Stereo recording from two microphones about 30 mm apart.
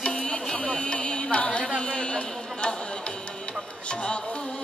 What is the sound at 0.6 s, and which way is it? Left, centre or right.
Music, left.